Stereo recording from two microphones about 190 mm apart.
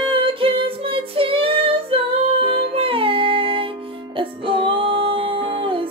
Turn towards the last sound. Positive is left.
turn(degrees=-25)  # may be behind; listen again after turning